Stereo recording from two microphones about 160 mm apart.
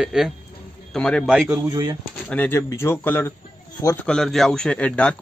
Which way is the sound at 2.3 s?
10° left (ahead or behind).